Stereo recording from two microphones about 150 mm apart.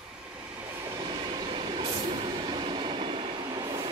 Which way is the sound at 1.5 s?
35° right (ahead or behind).